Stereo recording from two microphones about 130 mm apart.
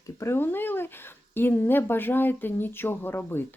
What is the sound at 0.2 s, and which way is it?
Speech, 20° left (ahead or behind).